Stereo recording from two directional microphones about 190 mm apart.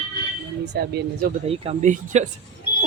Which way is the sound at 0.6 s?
65° right (ahead or behind).